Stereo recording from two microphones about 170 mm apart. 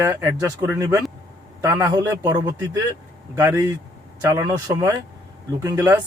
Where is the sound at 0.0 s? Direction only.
15° right (ahead or behind).